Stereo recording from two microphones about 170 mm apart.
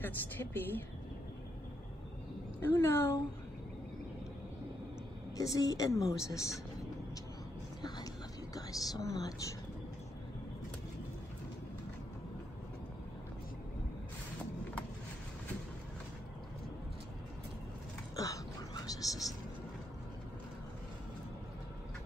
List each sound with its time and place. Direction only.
0.0 s a woman's voice: 10° left (ahead or behind)
2.6 s a woman's voice: 15° left (ahead or behind)
5.4 s a woman's voice: 20° left (ahead or behind)
8.5 s a woman's voice: 20° left (ahead or behind)
18.1 s a sound: 20° left (ahead or behind)